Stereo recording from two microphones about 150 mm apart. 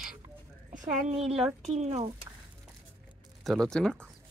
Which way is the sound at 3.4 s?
5° left (ahead or behind).